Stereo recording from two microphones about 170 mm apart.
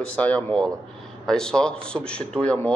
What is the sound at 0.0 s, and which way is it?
A man's voice, 5° left (ahead or behind).